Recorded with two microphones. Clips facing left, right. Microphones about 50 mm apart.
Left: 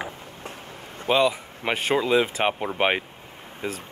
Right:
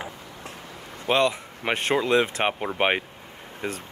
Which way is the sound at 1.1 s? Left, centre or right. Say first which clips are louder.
Left 1 dB; centre.